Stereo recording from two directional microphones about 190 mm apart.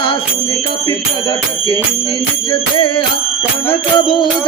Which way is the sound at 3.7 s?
25° left (ahead or behind).